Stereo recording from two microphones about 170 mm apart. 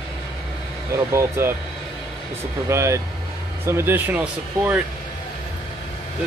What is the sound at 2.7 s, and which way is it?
Speech, 15° right (ahead or behind).